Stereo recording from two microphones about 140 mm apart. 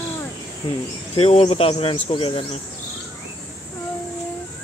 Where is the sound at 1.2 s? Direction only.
50° left (ahead or behind).